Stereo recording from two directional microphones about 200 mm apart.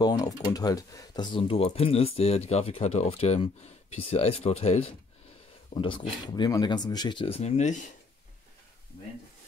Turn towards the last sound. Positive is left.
turn(degrees=35)  # may be behind; listen again after turning